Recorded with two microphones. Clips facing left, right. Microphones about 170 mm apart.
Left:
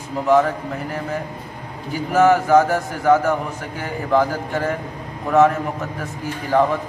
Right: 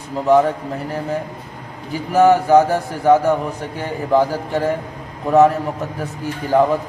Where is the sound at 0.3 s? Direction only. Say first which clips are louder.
Right 2 dB; 30° right (ahead or behind).